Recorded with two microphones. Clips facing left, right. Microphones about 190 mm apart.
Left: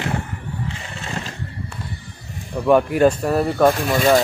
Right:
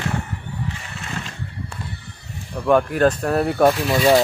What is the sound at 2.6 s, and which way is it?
Speech, 10° left (ahead or behind).